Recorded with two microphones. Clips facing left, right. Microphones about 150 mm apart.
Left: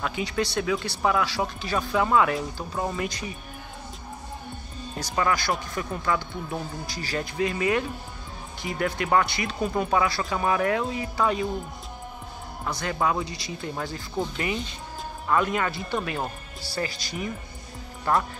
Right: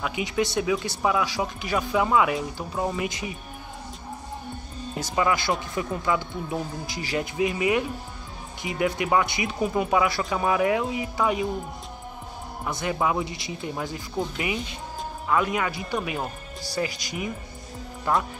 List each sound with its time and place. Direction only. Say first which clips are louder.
0.0 s speech: right 1 dB; 15° right (ahead or behind)
4.9 s speech: right 1 dB; 15° right (ahead or behind)
12.6 s speech: right 1 dB; 20° right (ahead or behind)